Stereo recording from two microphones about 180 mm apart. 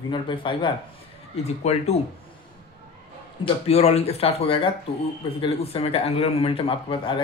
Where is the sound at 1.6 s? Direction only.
35° left (ahead or behind).